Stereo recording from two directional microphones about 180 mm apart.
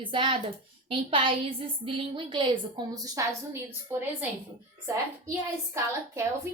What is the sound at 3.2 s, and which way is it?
Speech, 20° right (ahead or behind).